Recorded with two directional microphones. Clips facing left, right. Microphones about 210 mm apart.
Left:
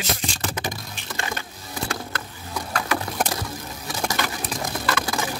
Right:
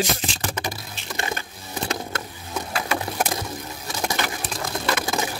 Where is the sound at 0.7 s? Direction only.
15° right (ahead or behind).